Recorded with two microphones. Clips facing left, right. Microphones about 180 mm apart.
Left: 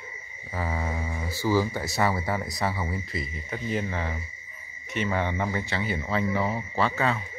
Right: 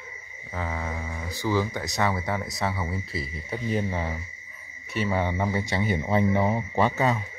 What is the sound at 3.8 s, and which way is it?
Speech, 10° right (ahead or behind).